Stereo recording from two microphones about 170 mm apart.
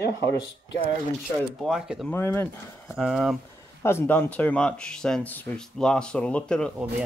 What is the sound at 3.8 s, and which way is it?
Speech, 15° left (ahead or behind).